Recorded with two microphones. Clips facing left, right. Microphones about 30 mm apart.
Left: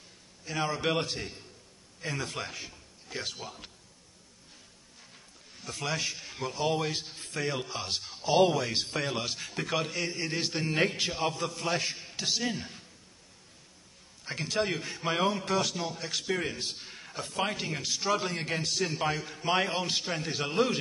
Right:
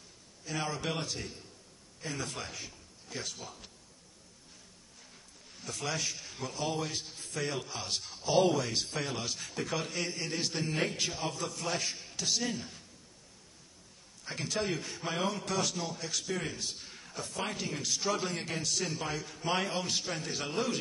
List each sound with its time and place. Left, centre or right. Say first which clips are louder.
0.7 s a man's voice: left 8 dB; left
2.0 s a man's voice: left 4 dB; left
5.5 s a sound: left 1 dB; centre
5.8 s a man's voice: left 3 dB; left
10.1 s a man's voice: left 3 dB; left
14.2 s a man's voice: left 3 dB; centre
14.7 s a man's voice: left 4 dB; left
18.5 s a man's voice: left 4 dB; left